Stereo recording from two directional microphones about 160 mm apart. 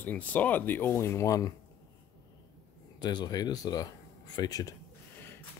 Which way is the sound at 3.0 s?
25° left (ahead or behind).